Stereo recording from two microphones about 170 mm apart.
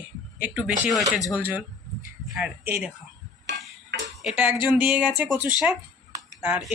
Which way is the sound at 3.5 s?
90° right.